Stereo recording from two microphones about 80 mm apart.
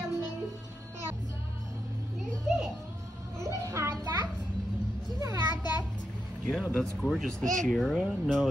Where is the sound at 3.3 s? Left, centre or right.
Right.